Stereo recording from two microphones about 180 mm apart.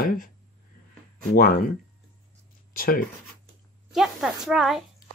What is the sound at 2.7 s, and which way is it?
Speech, 55° left (ahead or behind).